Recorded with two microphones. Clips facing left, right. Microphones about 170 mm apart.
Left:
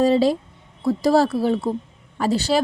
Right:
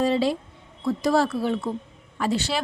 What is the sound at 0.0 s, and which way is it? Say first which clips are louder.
A woman's voice: left 5 dB; 40° left (ahead or behind).